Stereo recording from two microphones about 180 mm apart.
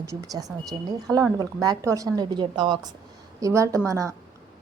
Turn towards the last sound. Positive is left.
turn(degrees=-15)  # may be behind; listen again after turning